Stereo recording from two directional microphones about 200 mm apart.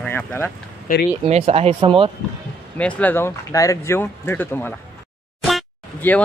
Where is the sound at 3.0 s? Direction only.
10° left (ahead or behind).